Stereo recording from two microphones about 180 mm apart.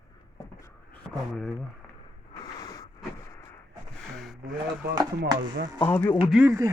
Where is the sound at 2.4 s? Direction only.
20° left (ahead or behind).